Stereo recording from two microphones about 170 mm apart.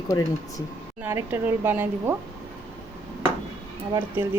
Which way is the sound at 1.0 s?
15° right (ahead or behind).